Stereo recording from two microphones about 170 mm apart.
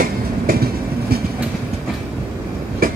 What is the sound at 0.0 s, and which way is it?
Train, 60° right (ahead or behind).